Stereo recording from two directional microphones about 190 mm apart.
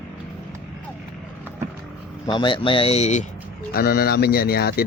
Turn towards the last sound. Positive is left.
turn(degrees=55)  # may be behind; listen again after turning